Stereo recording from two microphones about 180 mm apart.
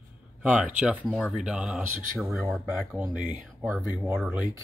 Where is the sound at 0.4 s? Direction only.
5° right (ahead or behind).